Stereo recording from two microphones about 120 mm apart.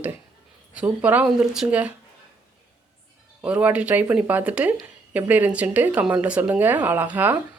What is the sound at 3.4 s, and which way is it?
Speech, 10° right (ahead or behind).